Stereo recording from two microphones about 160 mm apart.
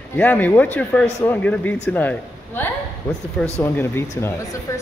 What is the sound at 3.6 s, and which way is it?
Speech, 15° left (ahead or behind).